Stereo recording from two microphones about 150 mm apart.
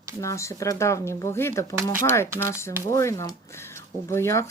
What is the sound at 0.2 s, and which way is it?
Speech, 20° left (ahead or behind).